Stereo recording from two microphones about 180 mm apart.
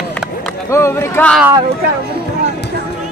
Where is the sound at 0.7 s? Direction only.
15° left (ahead or behind).